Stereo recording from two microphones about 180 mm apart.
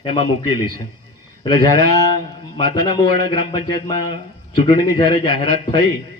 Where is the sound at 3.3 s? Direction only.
25° left (ahead or behind).